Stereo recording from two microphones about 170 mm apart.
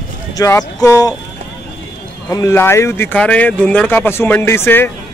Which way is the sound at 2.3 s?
15° left (ahead or behind).